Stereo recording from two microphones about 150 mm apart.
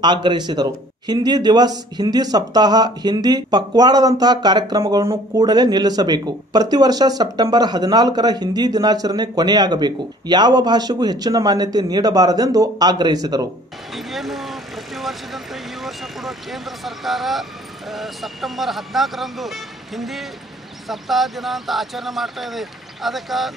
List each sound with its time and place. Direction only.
0.0 s a man's voice: 30° right (ahead or behind)
13.9 s speech: centre (ahead or behind)